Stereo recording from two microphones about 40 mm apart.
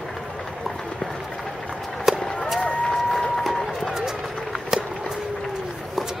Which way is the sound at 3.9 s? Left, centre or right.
Centre.